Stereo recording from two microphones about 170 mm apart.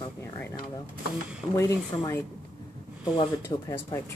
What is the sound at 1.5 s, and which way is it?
Speech, 20° left (ahead or behind).